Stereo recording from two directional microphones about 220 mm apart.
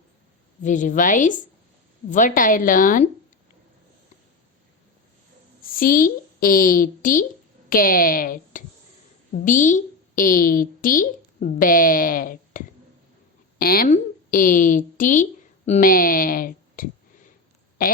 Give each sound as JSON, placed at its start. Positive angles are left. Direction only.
{"t": 0.6, "sound": "a woman's voice", "side_deg": 35}
{"t": 5.6, "sound": "a woman's voice", "side_deg": 40}